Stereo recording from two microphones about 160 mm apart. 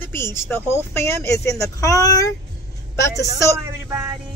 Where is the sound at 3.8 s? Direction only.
15° right (ahead or behind).